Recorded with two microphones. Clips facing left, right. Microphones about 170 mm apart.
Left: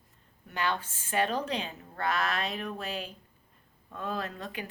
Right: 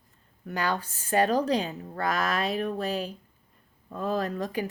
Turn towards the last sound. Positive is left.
turn(degrees=-40)  # may be behind; listen again after turning